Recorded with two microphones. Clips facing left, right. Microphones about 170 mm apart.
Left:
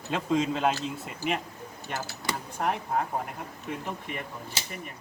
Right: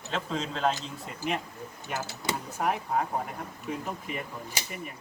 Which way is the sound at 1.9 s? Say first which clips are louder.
Right 1 dB; 5° right (ahead or behind).